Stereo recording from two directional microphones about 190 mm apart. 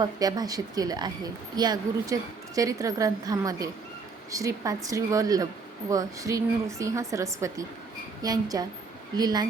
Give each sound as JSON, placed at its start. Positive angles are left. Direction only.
{"t": 0.0, "sound": "a woman's voice", "side_deg": -20}